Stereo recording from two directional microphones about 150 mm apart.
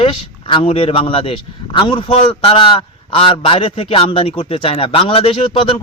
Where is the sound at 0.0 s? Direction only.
35° left (ahead or behind).